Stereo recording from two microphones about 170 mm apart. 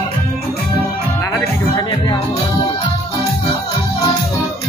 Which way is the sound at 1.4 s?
20° left (ahead or behind).